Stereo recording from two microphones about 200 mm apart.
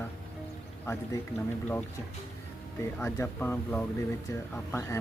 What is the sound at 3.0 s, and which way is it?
Speech, 10° left (ahead or behind).